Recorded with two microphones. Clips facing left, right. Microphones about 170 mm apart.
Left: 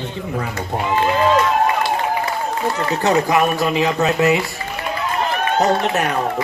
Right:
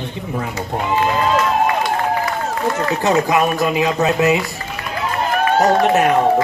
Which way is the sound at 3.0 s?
20° right (ahead or behind).